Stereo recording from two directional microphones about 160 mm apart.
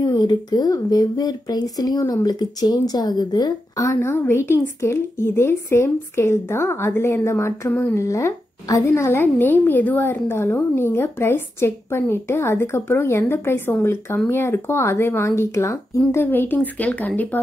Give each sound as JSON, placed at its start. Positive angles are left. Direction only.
{"t": 0.0, "sound": "speech", "side_deg": 25}